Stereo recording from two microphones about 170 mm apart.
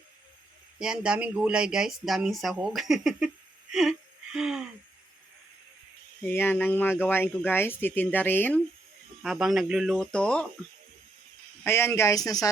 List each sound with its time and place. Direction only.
0.8 s speech: 5° right (ahead or behind)
3.7 s gasp: centre (ahead or behind)
6.2 s speech: 15° left (ahead or behind)
9.2 s speech: centre (ahead or behind)
11.6 s speech: 15° left (ahead or behind)